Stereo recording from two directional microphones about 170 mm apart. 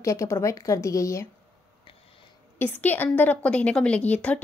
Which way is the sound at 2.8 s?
10° left (ahead or behind).